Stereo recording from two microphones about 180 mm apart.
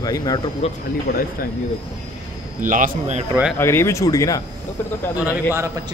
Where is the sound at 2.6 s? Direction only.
45° right (ahead or behind).